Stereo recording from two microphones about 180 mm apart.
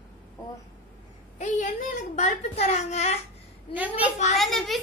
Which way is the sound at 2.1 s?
40° left (ahead or behind).